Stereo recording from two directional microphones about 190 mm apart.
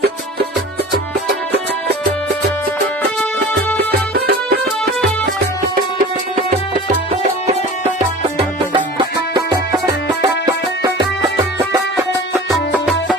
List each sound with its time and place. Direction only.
4.3 s music: 55° right (ahead or behind)
6.3 s music: 40° right (ahead or behind); by 11.0 s 20° right (ahead or behind)
12.7 s music: centre (ahead or behind)